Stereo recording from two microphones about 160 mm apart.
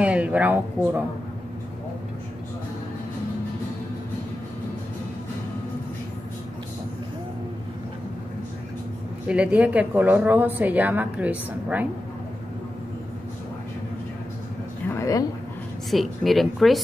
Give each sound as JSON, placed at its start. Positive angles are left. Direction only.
{"t": 0.0, "sound": "speech", "side_deg": -10}
{"t": 9.3, "sound": "a woman's voice", "side_deg": -10}
{"t": 14.9, "sound": "a sound", "side_deg": 20}
{"t": 15.9, "sound": "a woman's voice", "side_deg": 0}